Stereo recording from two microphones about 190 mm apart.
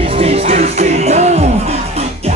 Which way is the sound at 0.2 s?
30° right (ahead or behind).